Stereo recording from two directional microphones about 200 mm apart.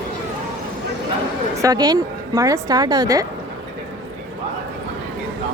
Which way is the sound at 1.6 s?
20° right (ahead or behind).